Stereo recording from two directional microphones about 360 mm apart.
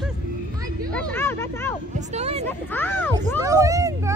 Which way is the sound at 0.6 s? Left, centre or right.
Centre.